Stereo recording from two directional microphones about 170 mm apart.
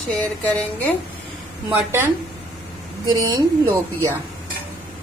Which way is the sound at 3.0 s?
25° right (ahead or behind).